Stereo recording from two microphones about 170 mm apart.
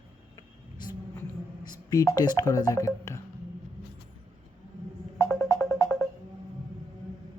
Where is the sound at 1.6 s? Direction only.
20° left (ahead or behind).